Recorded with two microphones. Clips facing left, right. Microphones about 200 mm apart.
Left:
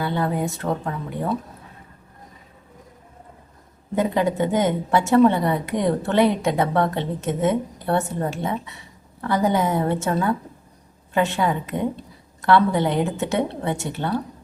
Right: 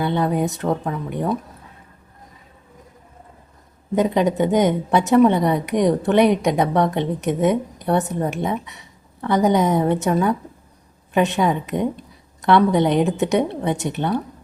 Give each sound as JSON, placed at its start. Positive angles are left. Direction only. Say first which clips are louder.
{"t": 0.0, "sound": "a woman's voice", "louder": "right 3 dB", "side_deg": -20}
{"t": 3.9, "sound": "a woman's voice", "louder": "right 3 dB", "side_deg": -20}